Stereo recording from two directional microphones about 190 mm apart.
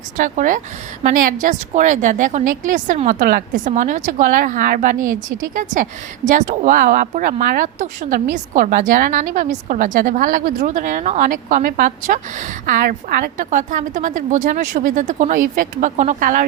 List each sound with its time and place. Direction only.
0.2 s a woman's voice: 45° right (ahead or behind)